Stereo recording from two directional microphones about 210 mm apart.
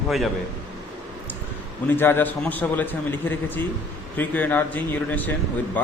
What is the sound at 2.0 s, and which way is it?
A man's voice, 10° left (ahead or behind).